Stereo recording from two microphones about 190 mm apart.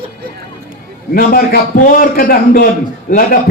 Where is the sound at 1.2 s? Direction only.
50° left (ahead or behind).